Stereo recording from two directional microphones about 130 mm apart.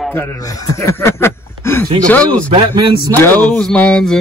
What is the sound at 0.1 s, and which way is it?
Speech, 20° left (ahead or behind).